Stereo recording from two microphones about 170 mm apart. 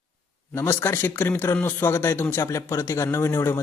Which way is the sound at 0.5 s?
15° left (ahead or behind).